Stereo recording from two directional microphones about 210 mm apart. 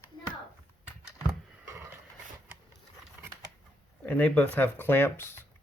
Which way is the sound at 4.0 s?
10° left (ahead or behind).